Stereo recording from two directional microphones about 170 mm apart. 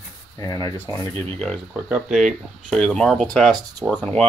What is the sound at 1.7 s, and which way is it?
Speech, 5° right (ahead or behind).